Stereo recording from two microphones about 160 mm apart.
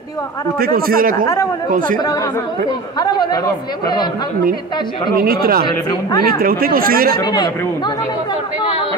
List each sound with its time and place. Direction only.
0.6 s speech: 65° right (ahead or behind)
1.1 s speech: 20° left (ahead or behind)
1.7 s speech: 55° right (ahead or behind)
3.0 s speech: 25° left (ahead or behind)
5.2 s speech: 65° right (ahead or behind)
7.2 s speech: 25° left (ahead or behind)